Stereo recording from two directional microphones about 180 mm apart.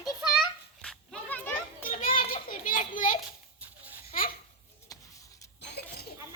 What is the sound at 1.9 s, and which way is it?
Children playing, 50° left (ahead or behind).